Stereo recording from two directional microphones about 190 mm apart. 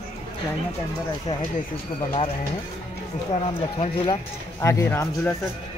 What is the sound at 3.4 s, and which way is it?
Speech, 25° left (ahead or behind).